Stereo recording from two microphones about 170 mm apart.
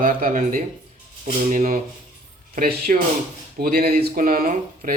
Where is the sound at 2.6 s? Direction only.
65° right (ahead or behind).